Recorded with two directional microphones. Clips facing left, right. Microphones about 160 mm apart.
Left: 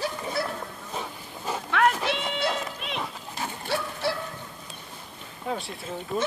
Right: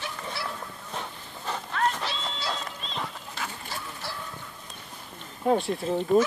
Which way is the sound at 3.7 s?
70° left (ahead or behind).